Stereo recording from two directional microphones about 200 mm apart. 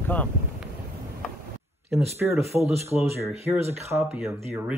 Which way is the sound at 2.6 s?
30° right (ahead or behind).